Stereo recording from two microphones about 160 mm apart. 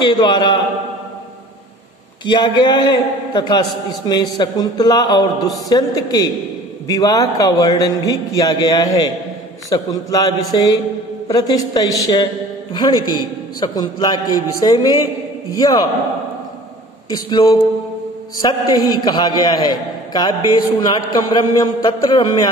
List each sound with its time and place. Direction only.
0.0 s a man's voice: 30° left (ahead or behind)
2.2 s a man's voice: 30° left (ahead or behind)
17.1 s a man's voice: 25° left (ahead or behind)